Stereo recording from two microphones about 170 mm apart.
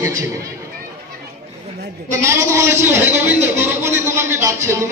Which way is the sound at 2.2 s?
15° right (ahead or behind).